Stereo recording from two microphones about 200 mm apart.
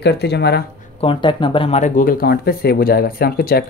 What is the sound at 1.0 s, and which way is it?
Speech, 25° left (ahead or behind).